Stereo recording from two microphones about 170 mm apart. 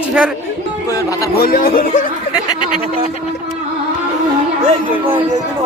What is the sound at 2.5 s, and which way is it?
Speech, 30° left (ahead or behind).